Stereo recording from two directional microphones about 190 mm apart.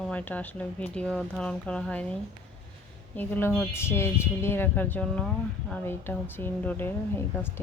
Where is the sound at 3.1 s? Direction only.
10° left (ahead or behind).